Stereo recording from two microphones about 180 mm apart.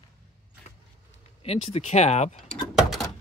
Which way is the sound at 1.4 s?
35° left (ahead or behind).